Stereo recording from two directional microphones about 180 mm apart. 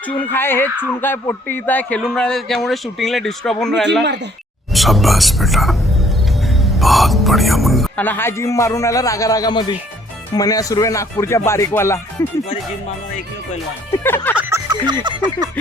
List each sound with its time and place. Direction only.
0.2 s speech: 10° left (ahead or behind)
8.0 s a man's voice: 10° left (ahead or behind)
14.0 s a man's voice: 10° left (ahead or behind)
14.7 s music: 25° right (ahead or behind)